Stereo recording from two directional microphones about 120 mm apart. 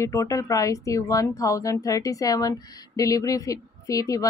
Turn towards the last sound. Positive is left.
turn(degrees=30)  # may be behind; listen again after turning